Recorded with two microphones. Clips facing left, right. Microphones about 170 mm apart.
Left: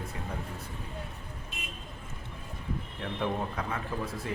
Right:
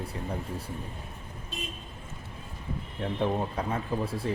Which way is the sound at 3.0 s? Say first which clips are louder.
Right 4 dB; 30° right (ahead or behind).